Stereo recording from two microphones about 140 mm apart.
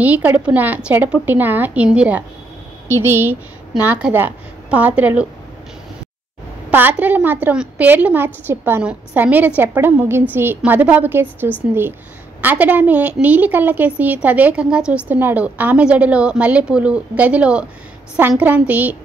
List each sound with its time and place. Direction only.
0.0 s a woman's voice: 10° right (ahead or behind)
6.7 s a woman's voice: 15° right (ahead or behind)